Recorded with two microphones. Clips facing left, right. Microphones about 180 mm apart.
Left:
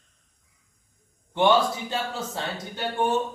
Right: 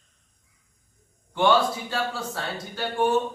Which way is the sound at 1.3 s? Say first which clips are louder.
Even; 20° left (ahead or behind).